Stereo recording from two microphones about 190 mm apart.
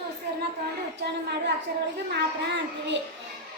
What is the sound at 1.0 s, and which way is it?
Female singing, 60° right (ahead or behind).